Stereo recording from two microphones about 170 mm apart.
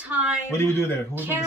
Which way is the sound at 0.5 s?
15° left (ahead or behind).